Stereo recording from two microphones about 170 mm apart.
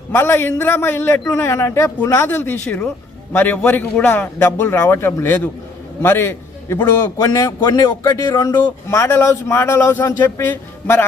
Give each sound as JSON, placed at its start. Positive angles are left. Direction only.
{"t": 0.1, "sound": "a man's voice", "side_deg": 15}